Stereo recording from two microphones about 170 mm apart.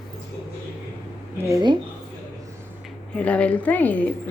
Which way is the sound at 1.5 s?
20° right (ahead or behind).